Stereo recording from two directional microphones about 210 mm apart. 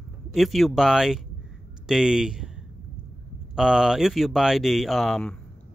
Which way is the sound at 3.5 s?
Centre (ahead or behind).